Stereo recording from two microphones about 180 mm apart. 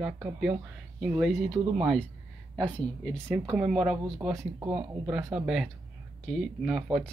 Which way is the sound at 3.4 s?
5° right (ahead or behind).